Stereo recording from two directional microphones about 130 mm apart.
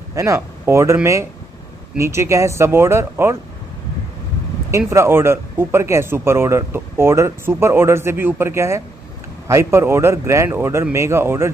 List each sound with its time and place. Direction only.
0.1 s speech: 25° right (ahead or behind)
2.0 s speech: 20° right (ahead or behind)
4.6 s speech: 20° right (ahead or behind)